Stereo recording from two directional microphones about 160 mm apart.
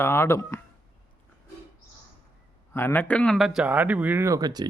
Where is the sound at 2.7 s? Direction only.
15° left (ahead or behind).